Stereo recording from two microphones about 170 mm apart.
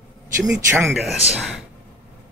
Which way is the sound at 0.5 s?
15° right (ahead or behind).